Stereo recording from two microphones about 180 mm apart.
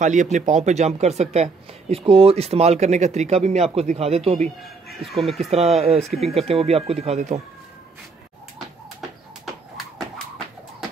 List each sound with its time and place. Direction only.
0.0 s speech: 45° right (ahead or behind)
4.9 s speech: centre (ahead or behind)
5.5 s speech: 35° right (ahead or behind)